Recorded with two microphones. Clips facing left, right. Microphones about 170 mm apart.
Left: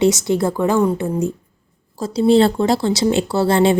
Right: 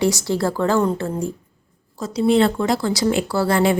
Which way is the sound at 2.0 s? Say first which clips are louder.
Left 3 dB; 30° left (ahead or behind).